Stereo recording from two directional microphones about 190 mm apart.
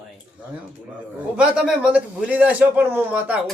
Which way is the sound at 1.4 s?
5° right (ahead or behind).